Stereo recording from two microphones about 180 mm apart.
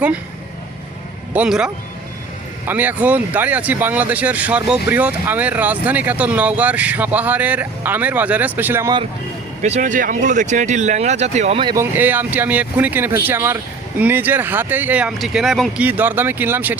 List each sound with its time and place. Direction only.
1.3 s speech: 5° right (ahead or behind)
9.6 s speech: 40° right (ahead or behind)
11.8 s speech: 10° right (ahead or behind)
15.9 s speech: 10° right (ahead or behind)